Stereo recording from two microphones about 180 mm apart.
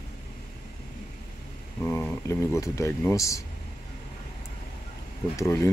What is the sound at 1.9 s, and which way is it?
Speech, 15° left (ahead or behind).